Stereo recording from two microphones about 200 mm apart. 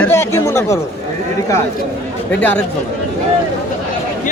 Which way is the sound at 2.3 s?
10° left (ahead or behind).